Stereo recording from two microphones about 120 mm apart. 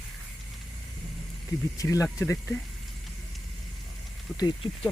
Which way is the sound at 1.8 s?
25° left (ahead or behind).